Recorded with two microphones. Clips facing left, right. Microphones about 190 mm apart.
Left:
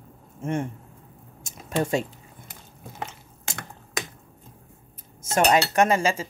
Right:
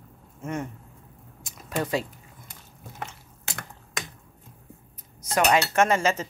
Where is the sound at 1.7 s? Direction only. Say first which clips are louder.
Left 3 dB; 25° left (ahead or behind).